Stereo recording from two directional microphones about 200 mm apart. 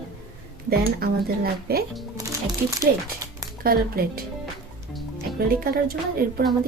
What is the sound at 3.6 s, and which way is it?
Speech, 50° right (ahead or behind).